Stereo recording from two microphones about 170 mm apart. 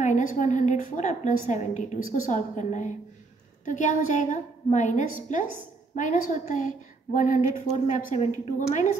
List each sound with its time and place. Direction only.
0.0 s a woman's voice: 50° left (ahead or behind)